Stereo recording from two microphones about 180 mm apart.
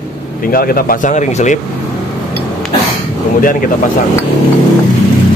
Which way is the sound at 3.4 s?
50° left (ahead or behind).